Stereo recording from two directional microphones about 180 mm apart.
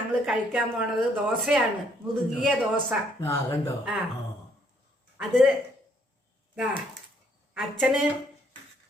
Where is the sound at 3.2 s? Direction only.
15° left (ahead or behind).